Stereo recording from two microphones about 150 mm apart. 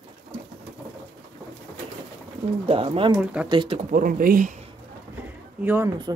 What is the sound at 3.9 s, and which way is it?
Speech, 65° right (ahead or behind).